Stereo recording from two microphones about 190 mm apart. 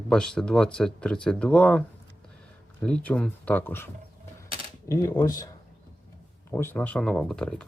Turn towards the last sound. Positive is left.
turn(degrees=5)  # may be behind; listen again after turning